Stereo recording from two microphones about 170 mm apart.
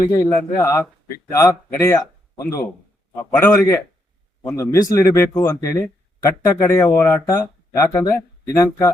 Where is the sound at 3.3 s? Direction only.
15° left (ahead or behind).